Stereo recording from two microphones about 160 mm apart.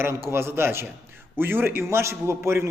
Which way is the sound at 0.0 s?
15° right (ahead or behind).